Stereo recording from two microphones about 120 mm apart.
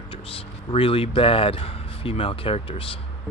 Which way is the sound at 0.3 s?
50° left (ahead or behind).